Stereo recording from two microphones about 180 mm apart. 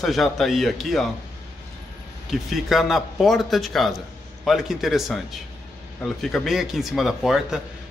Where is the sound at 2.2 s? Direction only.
Centre (ahead or behind).